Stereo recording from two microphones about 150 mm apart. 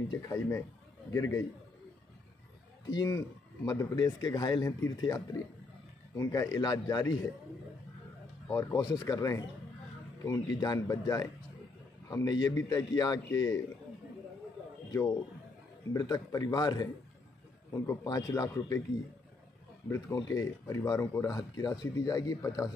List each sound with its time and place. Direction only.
0.2 s speech: 20° left (ahead or behind)
2.9 s speech: 25° left (ahead or behind)
8.5 s speech: 20° left (ahead or behind)
14.9 s speech: 25° left (ahead or behind)
19.9 s speech: 25° left (ahead or behind)